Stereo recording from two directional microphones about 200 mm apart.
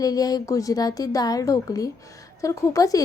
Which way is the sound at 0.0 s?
20° left (ahead or behind).